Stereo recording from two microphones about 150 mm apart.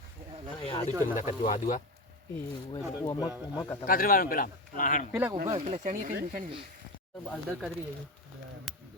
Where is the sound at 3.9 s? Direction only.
70° left (ahead or behind).